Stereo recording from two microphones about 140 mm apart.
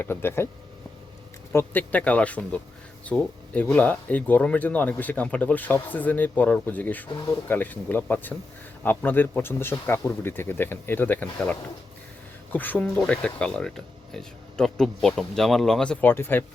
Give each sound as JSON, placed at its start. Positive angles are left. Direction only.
{"t": 0.0, "sound": "speech", "side_deg": 15}
{"t": 1.5, "sound": "speech", "side_deg": 10}